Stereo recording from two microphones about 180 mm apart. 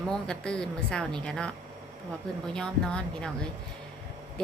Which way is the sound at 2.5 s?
5° left (ahead or behind).